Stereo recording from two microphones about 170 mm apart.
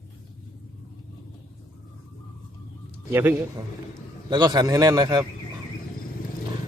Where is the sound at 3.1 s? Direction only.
10° right (ahead or behind).